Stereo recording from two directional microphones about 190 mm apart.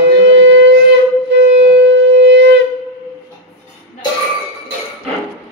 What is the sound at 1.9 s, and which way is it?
Shofar, 65° right (ahead or behind).